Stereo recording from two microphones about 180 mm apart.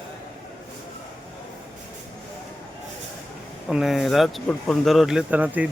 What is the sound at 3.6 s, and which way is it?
Speech, centre (ahead or behind).